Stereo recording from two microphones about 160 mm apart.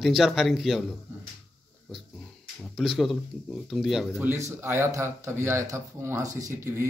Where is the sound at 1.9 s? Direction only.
Centre (ahead or behind).